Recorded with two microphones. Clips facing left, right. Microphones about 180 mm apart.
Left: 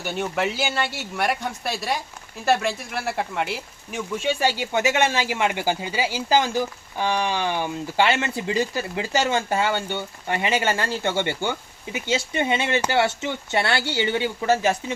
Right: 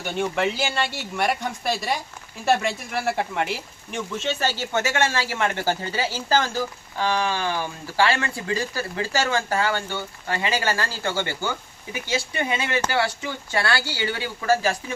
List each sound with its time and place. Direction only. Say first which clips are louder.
0.2 s speech: right 2 dB; 5° left (ahead or behind); by 14.9 s 20° left (ahead or behind)